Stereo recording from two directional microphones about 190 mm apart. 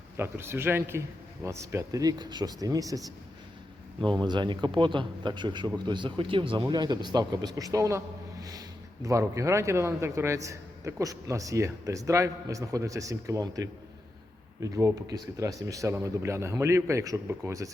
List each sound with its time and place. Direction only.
0.2 s speech: 10° right (ahead or behind)
4.1 s speech: 25° right (ahead or behind)